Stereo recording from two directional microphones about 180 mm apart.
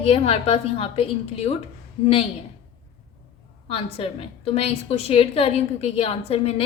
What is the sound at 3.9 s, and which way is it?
A woman's voice, 30° left (ahead or behind).